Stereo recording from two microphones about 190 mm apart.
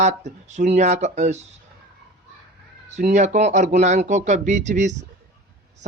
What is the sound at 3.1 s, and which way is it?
Speech, 35° right (ahead or behind).